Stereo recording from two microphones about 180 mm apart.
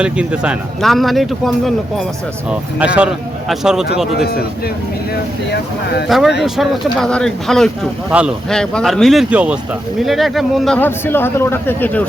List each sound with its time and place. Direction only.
0.0 s speech: 5° right (ahead or behind)
5.5 s speech: 65° left (ahead or behind)
6.1 s speech: centre (ahead or behind)
10.8 s a man's voice: 10° left (ahead or behind)